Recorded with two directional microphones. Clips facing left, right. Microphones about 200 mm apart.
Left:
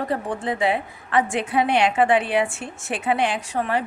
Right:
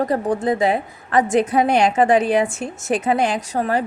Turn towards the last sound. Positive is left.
turn(degrees=-40)  # may be behind; listen again after turning